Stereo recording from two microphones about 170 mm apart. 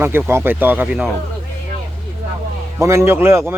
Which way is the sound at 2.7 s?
15° right (ahead or behind).